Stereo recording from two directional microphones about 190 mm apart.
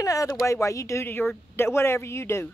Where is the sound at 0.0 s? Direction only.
15° left (ahead or behind).